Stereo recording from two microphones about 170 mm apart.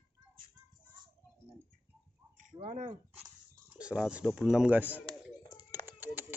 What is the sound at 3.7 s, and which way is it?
Speech, 5° right (ahead or behind).